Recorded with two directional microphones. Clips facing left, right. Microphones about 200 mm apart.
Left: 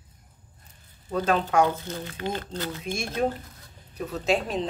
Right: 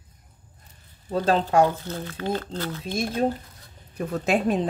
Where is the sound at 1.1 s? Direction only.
35° right (ahead or behind).